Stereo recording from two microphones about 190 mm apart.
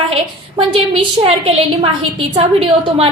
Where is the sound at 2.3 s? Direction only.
30° right (ahead or behind).